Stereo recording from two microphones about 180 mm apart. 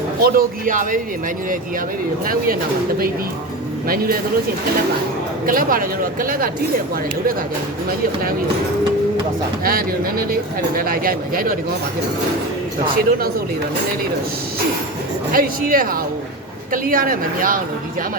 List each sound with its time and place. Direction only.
0.2 s speech: 50° right (ahead or behind)
2.2 s speech: 50° right (ahead or behind)
3.8 s speech: 55° right (ahead or behind)
5.5 s speech: 50° right (ahead or behind)
9.6 s speech: 55° right (ahead or behind)
15.3 s speech: 55° right (ahead or behind)